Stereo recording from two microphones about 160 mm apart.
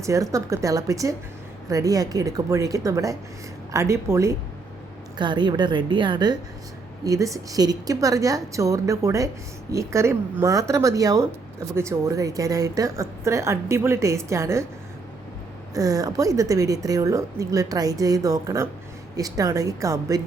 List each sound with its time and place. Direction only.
0.0 s a woman's voice: 20° right (ahead or behind)
5.1 s a woman's voice: 30° right (ahead or behind)
15.7 s a woman's voice: 20° right (ahead or behind)